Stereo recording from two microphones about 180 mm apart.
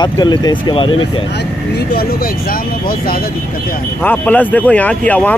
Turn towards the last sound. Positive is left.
turn(degrees=10)  # may be behind; listen again after turning